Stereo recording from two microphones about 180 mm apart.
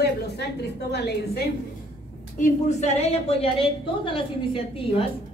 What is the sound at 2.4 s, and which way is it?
A woman's voice, 35° left (ahead or behind).